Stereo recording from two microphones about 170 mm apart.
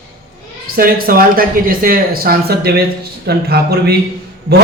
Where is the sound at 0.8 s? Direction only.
60° right (ahead or behind).